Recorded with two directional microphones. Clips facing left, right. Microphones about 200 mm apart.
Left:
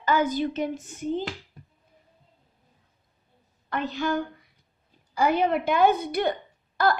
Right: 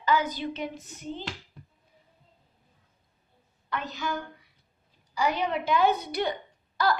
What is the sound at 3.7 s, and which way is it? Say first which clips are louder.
A woman's voice: left 5 dB; 50° left (ahead or behind).